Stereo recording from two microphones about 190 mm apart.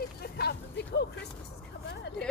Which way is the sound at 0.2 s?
60° left (ahead or behind).